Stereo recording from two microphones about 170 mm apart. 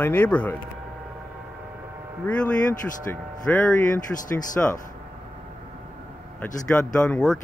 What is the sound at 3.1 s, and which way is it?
Speech, 10° left (ahead or behind).